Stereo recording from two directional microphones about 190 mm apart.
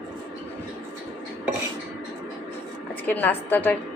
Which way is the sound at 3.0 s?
10° left (ahead or behind).